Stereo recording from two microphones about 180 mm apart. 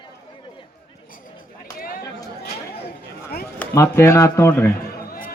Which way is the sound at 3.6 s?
15° left (ahead or behind).